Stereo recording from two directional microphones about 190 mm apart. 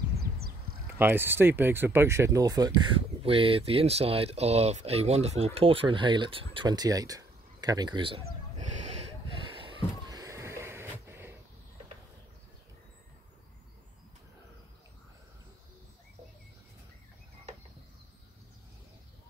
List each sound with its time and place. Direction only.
0.9 s speech: 10° right (ahead or behind)